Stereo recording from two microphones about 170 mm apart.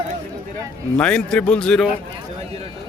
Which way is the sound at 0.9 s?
5° left (ahead or behind).